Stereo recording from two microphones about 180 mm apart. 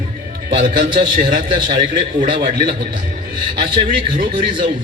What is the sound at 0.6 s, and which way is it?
A man's voice, 50° right (ahead or behind).